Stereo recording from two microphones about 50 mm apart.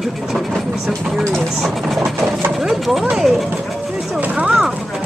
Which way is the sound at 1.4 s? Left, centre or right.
Centre.